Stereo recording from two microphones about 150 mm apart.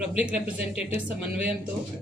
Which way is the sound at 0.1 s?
10° right (ahead or behind).